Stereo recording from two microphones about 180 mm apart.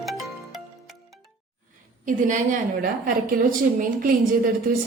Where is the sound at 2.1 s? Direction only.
45° right (ahead or behind).